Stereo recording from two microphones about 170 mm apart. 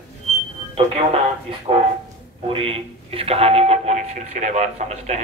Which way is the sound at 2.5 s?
35° right (ahead or behind).